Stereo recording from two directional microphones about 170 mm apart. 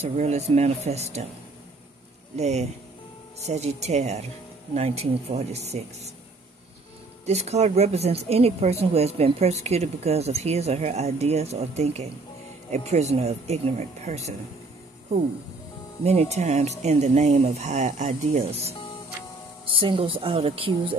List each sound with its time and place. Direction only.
0.0 s speech: 40° right (ahead or behind)
2.3 s speech: 40° right (ahead or behind)
7.2 s speech: 40° right (ahead or behind)
16.0 s speech: 40° right (ahead or behind)